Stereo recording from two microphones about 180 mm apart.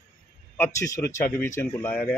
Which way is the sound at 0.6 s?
15° left (ahead or behind).